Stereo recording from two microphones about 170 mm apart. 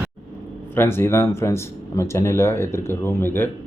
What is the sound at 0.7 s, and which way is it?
Speech, 15° left (ahead or behind).